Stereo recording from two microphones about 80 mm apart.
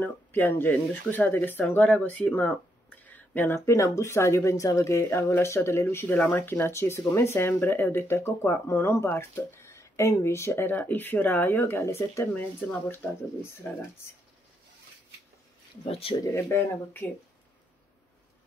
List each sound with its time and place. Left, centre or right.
0.0 s speech: left
12.4 s speech: left
16.3 s speech: left